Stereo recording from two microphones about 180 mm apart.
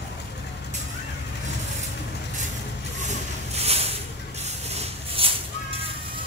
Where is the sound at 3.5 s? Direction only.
35° right (ahead or behind).